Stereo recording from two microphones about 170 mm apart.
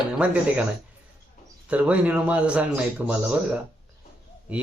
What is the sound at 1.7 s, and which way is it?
A man's voice, 10° right (ahead or behind).